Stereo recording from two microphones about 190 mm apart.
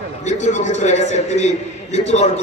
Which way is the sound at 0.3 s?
40° left (ahead or behind).